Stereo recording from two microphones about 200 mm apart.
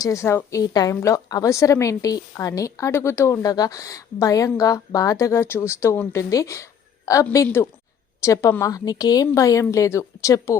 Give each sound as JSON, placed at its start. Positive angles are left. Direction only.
{"t": 0.0, "sound": "a woman's voice", "side_deg": 15}